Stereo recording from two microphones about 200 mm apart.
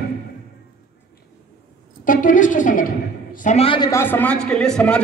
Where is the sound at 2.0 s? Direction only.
40° left (ahead or behind); by 3.9 s 25° left (ahead or behind).